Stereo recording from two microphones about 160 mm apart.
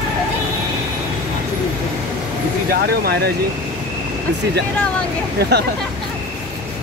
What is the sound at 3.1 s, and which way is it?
Speech, 90° right.